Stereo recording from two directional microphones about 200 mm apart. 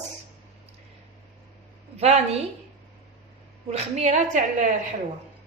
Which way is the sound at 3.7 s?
35° right (ahead or behind).